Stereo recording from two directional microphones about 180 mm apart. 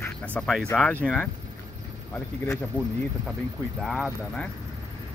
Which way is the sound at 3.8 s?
Centre (ahead or behind).